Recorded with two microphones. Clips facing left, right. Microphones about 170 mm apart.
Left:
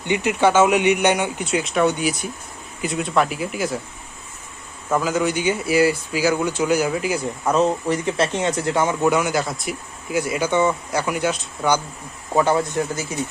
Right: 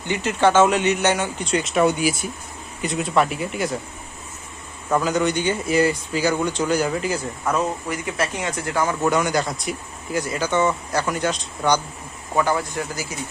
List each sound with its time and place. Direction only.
0.1 s speech: 15° left (ahead or behind)
4.9 s speech: centre (ahead or behind)
7.4 s speech: 25° left (ahead or behind)
9.0 s speech: 10° left (ahead or behind)
12.3 s speech: 20° left (ahead or behind)